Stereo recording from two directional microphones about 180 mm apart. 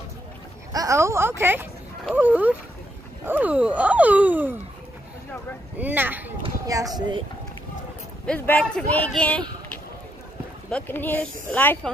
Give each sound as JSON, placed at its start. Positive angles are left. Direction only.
{"t": 0.7, "sound": "speech", "side_deg": -15}
{"t": 5.8, "sound": "speech", "side_deg": -10}
{"t": 6.4, "sound": "speech", "side_deg": -20}
{"t": 8.3, "sound": "a man's voice", "side_deg": 5}